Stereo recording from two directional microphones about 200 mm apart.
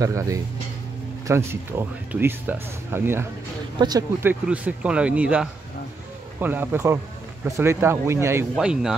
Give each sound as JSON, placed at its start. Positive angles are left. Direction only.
{"t": 0.0, "sound": "speech", "side_deg": -15}